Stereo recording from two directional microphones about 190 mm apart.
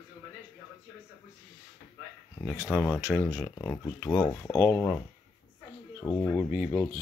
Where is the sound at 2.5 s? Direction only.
10° left (ahead or behind).